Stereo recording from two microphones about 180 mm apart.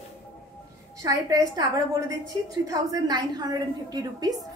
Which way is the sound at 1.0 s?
20° right (ahead or behind).